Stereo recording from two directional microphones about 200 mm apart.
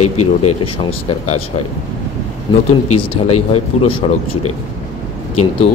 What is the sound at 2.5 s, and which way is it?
A man's voice, 20° left (ahead or behind).